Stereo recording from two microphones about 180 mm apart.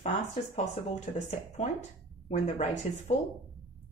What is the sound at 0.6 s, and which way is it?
Speech, 40° left (ahead or behind).